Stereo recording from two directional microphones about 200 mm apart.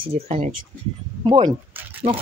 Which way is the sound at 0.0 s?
30° right (ahead or behind).